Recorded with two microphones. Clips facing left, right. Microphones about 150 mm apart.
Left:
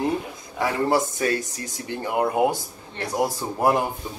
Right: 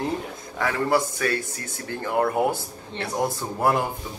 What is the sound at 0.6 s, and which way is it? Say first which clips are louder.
A man's voice: left 1 dB; 20° left (ahead or behind).